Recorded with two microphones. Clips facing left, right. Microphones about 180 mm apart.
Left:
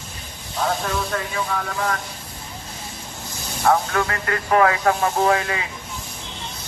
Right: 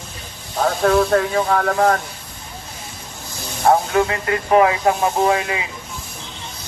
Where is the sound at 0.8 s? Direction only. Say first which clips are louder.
Right 10 dB; 55° right (ahead or behind).